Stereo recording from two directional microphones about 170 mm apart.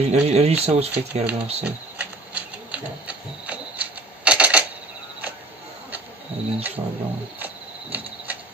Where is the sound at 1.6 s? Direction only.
10° right (ahead or behind).